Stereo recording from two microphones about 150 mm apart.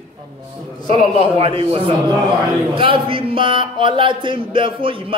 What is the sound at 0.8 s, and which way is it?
A man's voice, 35° right (ahead or behind).